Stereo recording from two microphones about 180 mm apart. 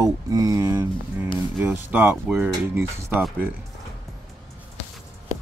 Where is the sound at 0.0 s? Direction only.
20° right (ahead or behind).